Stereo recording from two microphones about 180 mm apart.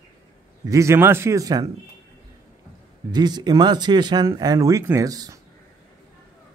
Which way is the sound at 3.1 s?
25° right (ahead or behind).